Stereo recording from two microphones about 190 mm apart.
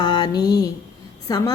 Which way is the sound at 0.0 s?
25° left (ahead or behind).